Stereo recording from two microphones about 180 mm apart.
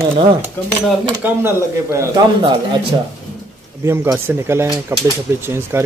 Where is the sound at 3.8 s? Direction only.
15° right (ahead or behind).